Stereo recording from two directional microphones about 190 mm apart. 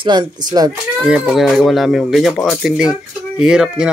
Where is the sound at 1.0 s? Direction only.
5° right (ahead or behind).